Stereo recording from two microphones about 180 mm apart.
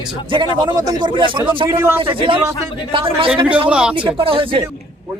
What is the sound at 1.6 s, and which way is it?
Speech, 15° right (ahead or behind).